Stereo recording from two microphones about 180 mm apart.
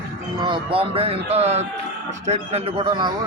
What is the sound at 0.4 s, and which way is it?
Speech, 30° right (ahead or behind).